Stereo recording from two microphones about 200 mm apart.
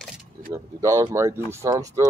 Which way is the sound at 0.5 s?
15° right (ahead or behind).